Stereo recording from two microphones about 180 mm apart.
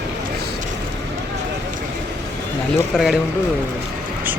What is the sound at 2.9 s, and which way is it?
Speech, 5° right (ahead or behind).